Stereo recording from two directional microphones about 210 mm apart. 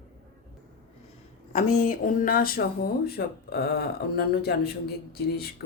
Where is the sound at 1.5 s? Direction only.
40° left (ahead or behind).